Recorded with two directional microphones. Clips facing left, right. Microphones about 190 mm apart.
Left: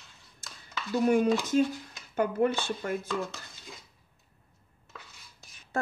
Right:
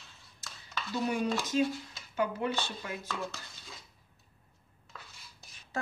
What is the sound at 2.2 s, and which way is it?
Speech, 50° left (ahead or behind).